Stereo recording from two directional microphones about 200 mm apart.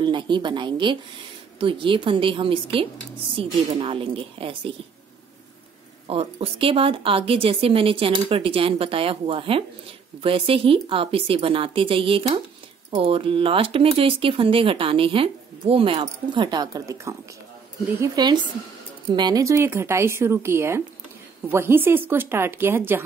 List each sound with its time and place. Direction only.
0.0 s speech: 25° right (ahead or behind)
6.0 s speech: 30° right (ahead or behind); by 23.0 s 10° right (ahead or behind)